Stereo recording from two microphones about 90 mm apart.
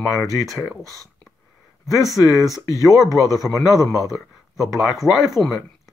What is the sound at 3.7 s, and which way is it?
Speech, 35° left (ahead or behind).